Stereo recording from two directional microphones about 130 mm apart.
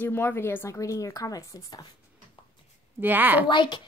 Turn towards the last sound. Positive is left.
turn(degrees=35)  # may be behind; listen again after turning